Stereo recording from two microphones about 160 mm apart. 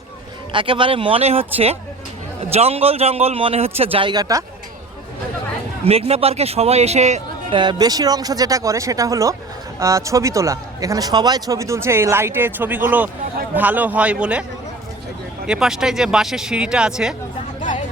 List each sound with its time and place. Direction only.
0.5 s a man's voice: 30° right (ahead or behind)
5.8 s a man's voice: 40° right (ahead or behind)
7.5 s a man's voice: 30° right (ahead or behind); by 14.4 s 5° right (ahead or behind)
15.4 s speech: 5° right (ahead or behind)